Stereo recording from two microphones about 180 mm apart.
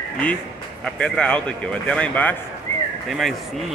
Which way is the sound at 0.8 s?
5° left (ahead or behind).